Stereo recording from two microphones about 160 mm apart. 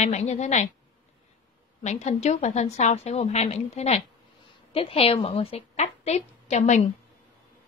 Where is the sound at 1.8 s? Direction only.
45° left (ahead or behind).